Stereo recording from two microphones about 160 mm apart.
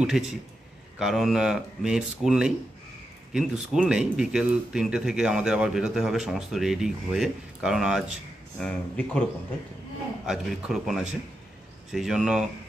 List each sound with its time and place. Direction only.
0.0 s speech: 5° right (ahead or behind)
8.6 s speech: 5° left (ahead or behind)
10.2 s speech: centre (ahead or behind)